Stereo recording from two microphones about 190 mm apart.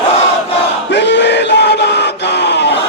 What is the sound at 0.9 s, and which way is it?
Chant, 65° left (ahead or behind).